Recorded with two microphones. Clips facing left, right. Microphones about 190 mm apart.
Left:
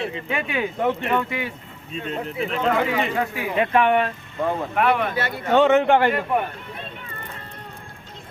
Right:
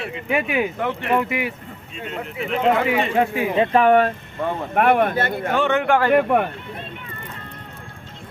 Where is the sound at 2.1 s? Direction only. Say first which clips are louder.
Left 2 dB; 35° left (ahead or behind).